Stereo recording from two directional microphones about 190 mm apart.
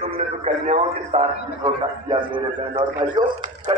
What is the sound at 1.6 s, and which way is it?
A man's voice, 25° right (ahead or behind).